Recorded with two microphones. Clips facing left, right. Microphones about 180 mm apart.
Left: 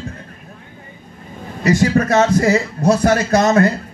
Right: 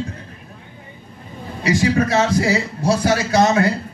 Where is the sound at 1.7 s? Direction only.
45° left (ahead or behind).